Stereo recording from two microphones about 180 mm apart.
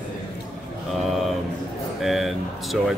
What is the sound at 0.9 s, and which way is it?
A man's voice, centre (ahead or behind).